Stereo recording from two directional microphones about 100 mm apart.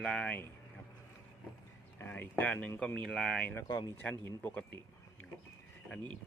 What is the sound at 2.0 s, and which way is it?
Speech, 20° left (ahead or behind).